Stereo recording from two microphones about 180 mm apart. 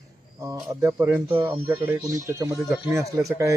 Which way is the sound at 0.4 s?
15° right (ahead or behind).